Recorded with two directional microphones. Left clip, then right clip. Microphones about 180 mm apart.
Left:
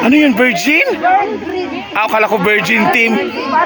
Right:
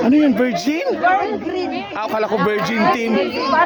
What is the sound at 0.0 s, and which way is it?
Speech, 5° left (ahead or behind).